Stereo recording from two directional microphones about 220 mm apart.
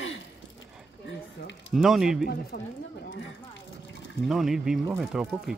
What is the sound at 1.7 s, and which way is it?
Speech, centre (ahead or behind).